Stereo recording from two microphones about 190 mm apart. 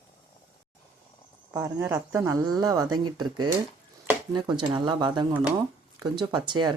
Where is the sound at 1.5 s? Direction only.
15° right (ahead or behind).